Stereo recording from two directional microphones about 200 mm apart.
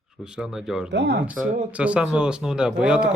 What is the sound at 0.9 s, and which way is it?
Speech, 55° right (ahead or behind).